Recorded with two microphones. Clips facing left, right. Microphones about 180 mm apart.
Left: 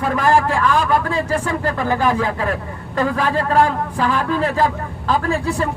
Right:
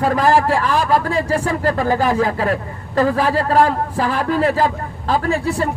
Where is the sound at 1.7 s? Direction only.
40° right (ahead or behind).